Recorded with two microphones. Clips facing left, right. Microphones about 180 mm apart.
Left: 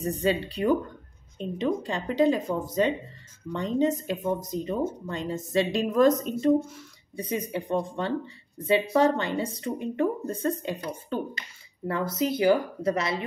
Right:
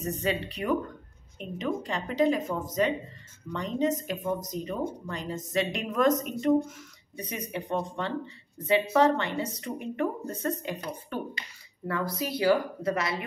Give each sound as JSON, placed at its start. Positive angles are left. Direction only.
{"t": 0.0, "sound": "speech", "side_deg": 30}